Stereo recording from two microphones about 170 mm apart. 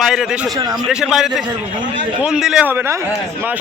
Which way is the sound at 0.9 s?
5° right (ahead or behind).